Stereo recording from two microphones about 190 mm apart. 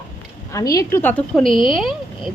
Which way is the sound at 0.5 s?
20° left (ahead or behind).